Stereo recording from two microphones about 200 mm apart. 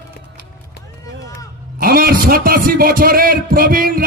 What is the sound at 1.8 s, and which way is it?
A man's voice, 45° right (ahead or behind).